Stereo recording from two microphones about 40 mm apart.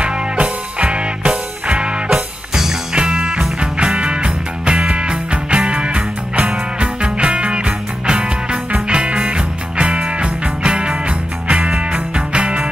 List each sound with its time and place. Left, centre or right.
0.0 s music: right
2.0 s music: centre; by 12.6 s right